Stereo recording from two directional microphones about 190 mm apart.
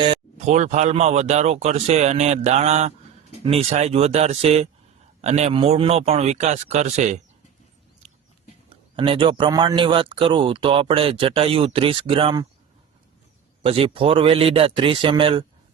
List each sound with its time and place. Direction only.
0.0 s speech: 30° right (ahead or behind)
9.0 s speech: 25° right (ahead or behind)
13.6 s speech: 30° right (ahead or behind)